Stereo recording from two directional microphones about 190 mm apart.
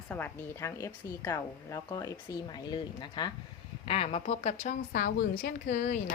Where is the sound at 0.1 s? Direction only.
15° left (ahead or behind); by 4.5 s 35° left (ahead or behind).